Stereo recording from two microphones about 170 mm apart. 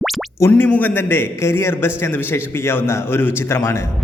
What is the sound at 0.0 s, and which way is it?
Music, centre (ahead or behind).